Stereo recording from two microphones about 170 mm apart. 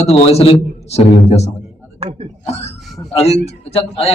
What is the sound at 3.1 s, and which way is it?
Speech, 35° left (ahead or behind).